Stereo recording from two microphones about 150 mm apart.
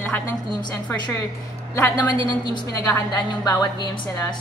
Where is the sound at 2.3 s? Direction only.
30° left (ahead or behind).